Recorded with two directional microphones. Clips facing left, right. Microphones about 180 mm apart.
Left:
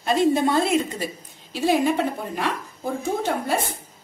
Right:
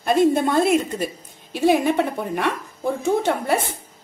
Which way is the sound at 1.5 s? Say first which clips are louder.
Right 3 dB; 60° right (ahead or behind).